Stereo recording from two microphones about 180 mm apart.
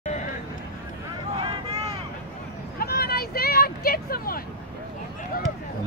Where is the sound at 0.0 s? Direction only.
45° left (ahead or behind).